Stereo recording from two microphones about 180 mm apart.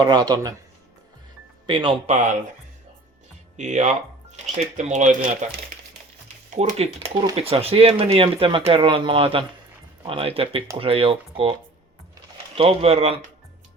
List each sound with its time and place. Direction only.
0.0 s a man's voice: 25° right (ahead or behind)
1.6 s a man's voice: 25° right (ahead or behind)
3.6 s speech: 40° right (ahead or behind)
6.5 s speech: 40° right (ahead or behind)
12.5 s speech: 35° right (ahead or behind)